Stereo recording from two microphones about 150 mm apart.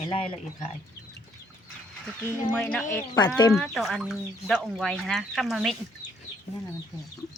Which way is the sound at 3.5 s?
Centre (ahead or behind).